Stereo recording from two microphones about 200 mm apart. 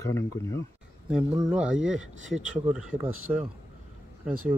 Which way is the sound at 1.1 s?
5° right (ahead or behind).